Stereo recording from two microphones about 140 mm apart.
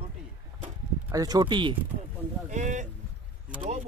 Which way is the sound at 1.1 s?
30° right (ahead or behind).